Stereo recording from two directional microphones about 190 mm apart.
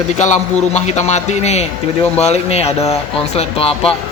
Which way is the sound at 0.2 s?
35° left (ahead or behind).